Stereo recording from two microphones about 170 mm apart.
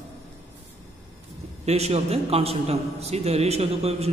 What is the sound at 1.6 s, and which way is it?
A man's voice, 40° right (ahead or behind).